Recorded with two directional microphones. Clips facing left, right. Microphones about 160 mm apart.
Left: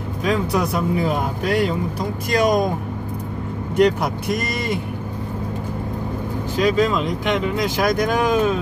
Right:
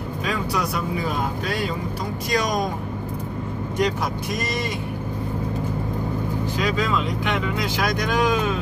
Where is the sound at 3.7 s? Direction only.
60° left (ahead or behind).